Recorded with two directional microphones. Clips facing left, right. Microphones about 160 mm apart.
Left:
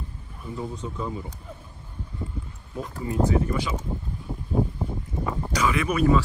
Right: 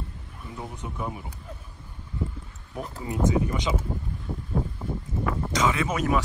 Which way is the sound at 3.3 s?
20° right (ahead or behind).